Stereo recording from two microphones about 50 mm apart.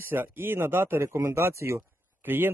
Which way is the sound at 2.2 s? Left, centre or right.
Right.